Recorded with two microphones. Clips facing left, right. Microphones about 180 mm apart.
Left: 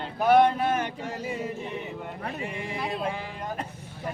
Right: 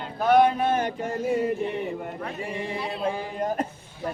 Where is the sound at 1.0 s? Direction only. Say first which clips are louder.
Right 7 dB; 50° right (ahead or behind).